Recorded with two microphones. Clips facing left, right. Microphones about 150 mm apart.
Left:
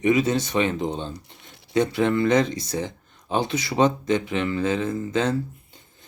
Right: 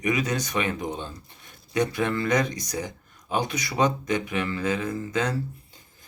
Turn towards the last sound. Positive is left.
turn(degrees=25)  # may be behind; listen again after turning